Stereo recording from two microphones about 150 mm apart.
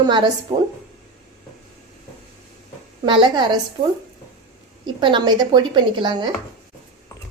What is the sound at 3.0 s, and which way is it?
Speech, 30° right (ahead or behind).